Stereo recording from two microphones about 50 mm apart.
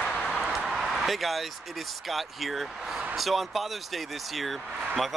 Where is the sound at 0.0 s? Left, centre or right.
Centre.